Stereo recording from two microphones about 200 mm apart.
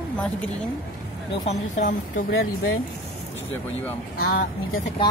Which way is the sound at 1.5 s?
40° left (ahead or behind).